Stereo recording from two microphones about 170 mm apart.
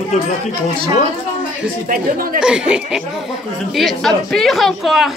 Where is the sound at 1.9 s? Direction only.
55° right (ahead or behind).